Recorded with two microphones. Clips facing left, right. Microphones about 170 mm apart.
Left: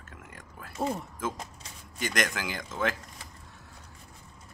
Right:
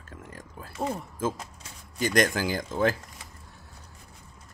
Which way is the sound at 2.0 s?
35° right (ahead or behind).